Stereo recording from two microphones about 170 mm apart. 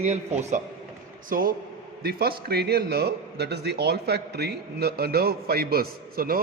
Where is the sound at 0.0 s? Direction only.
40° right (ahead or behind).